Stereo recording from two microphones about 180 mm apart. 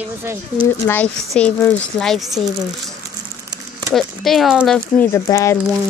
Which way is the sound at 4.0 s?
Centre (ahead or behind).